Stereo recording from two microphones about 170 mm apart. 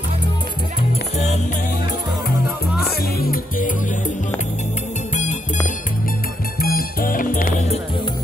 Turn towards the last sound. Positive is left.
turn(degrees=55)  # may be behind; listen again after turning